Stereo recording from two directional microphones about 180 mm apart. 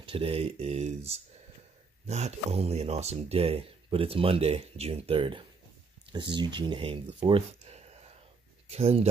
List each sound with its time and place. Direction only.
0.0 s speech: 30° right (ahead or behind)